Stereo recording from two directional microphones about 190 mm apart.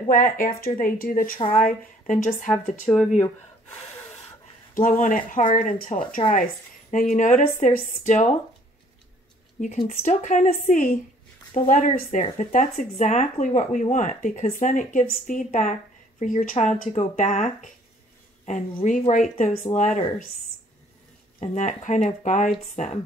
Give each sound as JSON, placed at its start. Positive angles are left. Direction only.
{"t": 0.1, "sound": "speech", "side_deg": 50}
{"t": 4.7, "sound": "speech", "side_deg": 45}
{"t": 9.6, "sound": "speech", "side_deg": 45}
{"t": 21.4, "sound": "speech", "side_deg": 40}